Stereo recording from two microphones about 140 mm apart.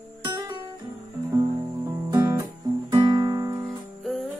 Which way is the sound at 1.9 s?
25° right (ahead or behind).